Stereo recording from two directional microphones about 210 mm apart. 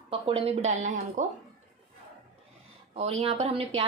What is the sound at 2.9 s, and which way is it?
Speech, 30° right (ahead or behind).